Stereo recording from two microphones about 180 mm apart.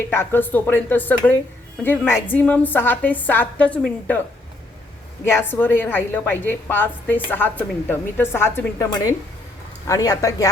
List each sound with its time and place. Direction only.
0.1 s a woman's voice: 15° left (ahead or behind)
5.2 s a woman's voice: 15° left (ahead or behind)